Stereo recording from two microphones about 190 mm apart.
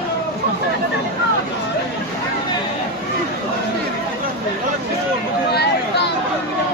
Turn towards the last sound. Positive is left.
turn(degrees=60)  # may be behind; listen again after turning